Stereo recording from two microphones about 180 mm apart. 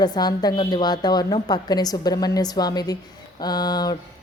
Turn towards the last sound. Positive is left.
turn(degrees=20)  # may be behind; listen again after turning